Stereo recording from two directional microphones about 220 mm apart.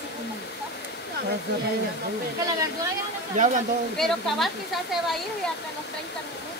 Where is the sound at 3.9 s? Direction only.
Centre (ahead or behind).